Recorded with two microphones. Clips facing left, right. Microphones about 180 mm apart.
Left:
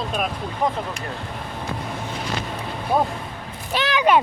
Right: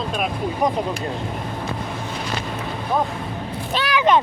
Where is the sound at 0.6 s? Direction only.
15° right (ahead or behind).